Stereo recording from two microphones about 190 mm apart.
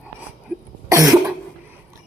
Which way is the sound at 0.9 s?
15° right (ahead or behind).